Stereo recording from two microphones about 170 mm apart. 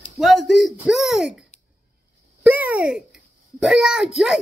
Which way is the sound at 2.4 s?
10° right (ahead or behind).